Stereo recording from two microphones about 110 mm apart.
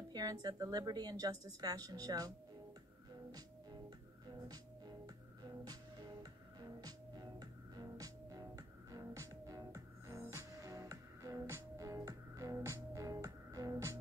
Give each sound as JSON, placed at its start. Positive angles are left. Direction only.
{"t": 0.1, "sound": "a woman's voice", "side_deg": -35}
{"t": 4.3, "sound": "music", "side_deg": -35}